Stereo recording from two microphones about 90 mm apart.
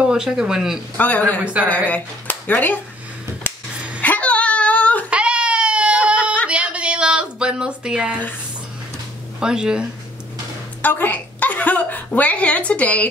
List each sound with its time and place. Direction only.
0.0 s speech: 10° right (ahead or behind)
0.9 s a woman's voice: 20° left (ahead or behind)
1.4 s speech: 15° right (ahead or behind)
1.9 s speech: 20° left (ahead or behind)
4.0 s a sound: 15° left (ahead or behind)
5.1 s baby cry: 10° right (ahead or behind)
6.5 s a sound: 15° right (ahead or behind)
9.4 s speech: 10° right (ahead or behind)
10.8 s a woman's voice: 20° left (ahead or behind)